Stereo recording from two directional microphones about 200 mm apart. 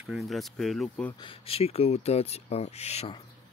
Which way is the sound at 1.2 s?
25° left (ahead or behind).